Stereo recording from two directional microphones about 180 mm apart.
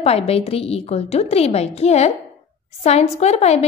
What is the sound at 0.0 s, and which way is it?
A woman's voice, 35° left (ahead or behind).